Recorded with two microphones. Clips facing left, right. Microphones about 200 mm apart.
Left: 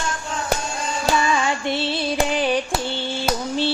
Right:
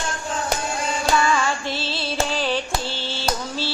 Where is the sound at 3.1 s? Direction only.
20° left (ahead or behind).